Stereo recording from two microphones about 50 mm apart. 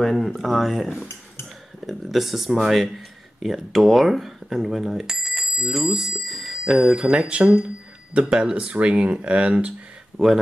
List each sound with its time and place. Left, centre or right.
0.0 s speech: centre; by 9.8 s right
10.1 s speech: centre